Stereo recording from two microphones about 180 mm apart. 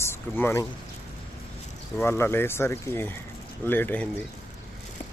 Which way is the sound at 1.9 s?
15° left (ahead or behind).